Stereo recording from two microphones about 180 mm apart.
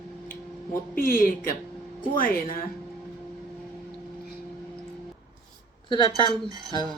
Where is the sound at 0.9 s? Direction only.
50° left (ahead or behind).